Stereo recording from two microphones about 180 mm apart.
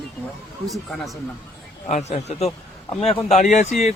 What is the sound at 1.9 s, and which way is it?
Speech, 40° left (ahead or behind).